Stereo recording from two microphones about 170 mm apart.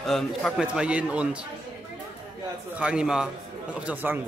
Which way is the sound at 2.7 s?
5° right (ahead or behind).